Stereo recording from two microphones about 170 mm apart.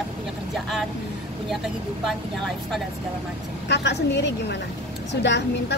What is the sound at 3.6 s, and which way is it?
A woman's voice, 90° left.